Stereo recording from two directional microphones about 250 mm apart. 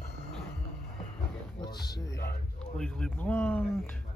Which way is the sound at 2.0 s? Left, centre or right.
Left.